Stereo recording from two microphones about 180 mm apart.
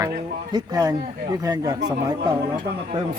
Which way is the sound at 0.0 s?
20° right (ahead or behind).